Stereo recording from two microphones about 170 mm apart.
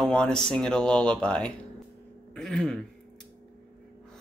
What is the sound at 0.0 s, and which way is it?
Speech, 5° left (ahead or behind).